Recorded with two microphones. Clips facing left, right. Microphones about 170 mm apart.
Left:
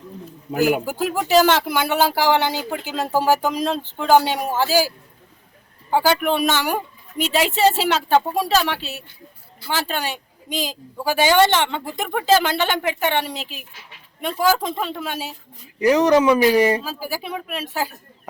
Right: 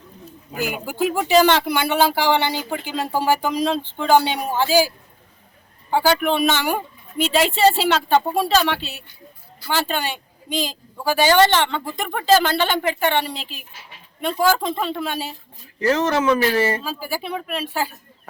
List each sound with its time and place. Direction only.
0.9 s speech: centre (ahead or behind)
5.9 s speech: 10° left (ahead or behind)
8.8 s speech: 40° left (ahead or behind)
9.6 s speech: 5° left (ahead or behind)
11.1 s speech: 10° left (ahead or behind)
14.3 s speech: 10° left (ahead or behind)